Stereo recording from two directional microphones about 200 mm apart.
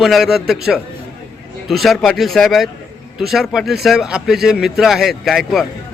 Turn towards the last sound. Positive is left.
turn(degrees=0)  # may be behind; listen again after turning